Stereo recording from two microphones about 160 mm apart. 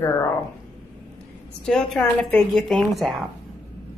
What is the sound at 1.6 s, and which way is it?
A woman's voice, 5° left (ahead or behind).